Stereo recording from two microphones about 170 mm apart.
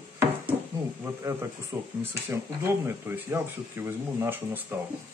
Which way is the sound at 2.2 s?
15° right (ahead or behind).